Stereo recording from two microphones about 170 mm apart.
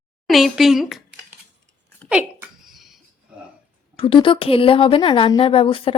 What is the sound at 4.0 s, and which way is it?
A woman's voice, 30° left (ahead or behind).